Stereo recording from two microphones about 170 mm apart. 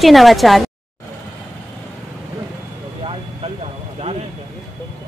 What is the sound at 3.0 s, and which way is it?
Vehicle, 35° right (ahead or behind).